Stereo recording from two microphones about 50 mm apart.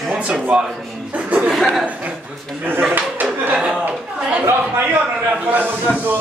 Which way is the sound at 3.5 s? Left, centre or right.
Centre.